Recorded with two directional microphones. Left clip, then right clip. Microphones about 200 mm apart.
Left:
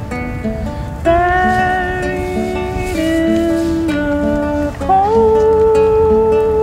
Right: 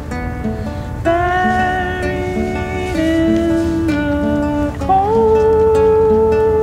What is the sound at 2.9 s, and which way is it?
Music, centre (ahead or behind).